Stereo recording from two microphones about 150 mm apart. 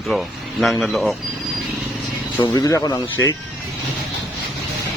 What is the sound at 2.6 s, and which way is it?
Speech, 25° left (ahead or behind).